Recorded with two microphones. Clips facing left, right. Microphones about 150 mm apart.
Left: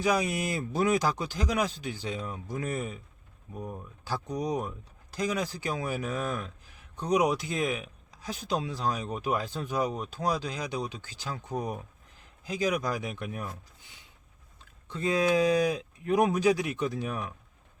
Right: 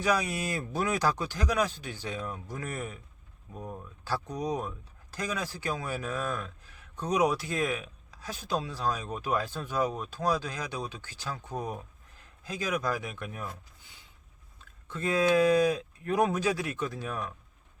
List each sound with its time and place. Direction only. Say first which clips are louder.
0.3 s speech: left 3 dB; 15° left (ahead or behind)
14.8 s speech: even; 20° left (ahead or behind)